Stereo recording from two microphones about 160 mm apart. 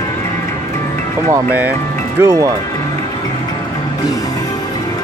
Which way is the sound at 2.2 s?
20° right (ahead or behind).